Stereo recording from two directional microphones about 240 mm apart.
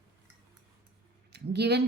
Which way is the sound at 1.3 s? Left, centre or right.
Right.